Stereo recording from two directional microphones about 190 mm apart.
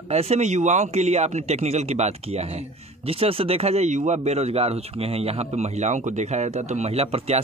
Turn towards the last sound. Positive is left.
turn(degrees=-35)  # may be behind; listen again after turning